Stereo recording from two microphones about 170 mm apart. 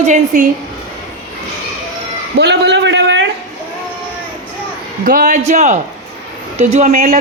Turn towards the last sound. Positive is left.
turn(degrees=-45)  # may be behind; listen again after turning